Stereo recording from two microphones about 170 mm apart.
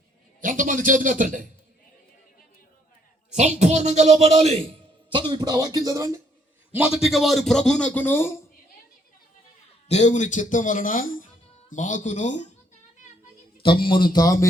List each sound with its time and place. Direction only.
0.4 s a man's voice: 50° right (ahead or behind)
3.3 s speech: 45° right (ahead or behind)
5.1 s speech: 25° right (ahead or behind)
6.7 s a man's voice: 5° right (ahead or behind); by 8.4 s 15° left (ahead or behind)
9.9 s speech: 45° left (ahead or behind)
13.6 s speech: 30° left (ahead or behind)